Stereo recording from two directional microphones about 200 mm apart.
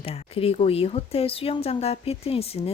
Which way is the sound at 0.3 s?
30° left (ahead or behind).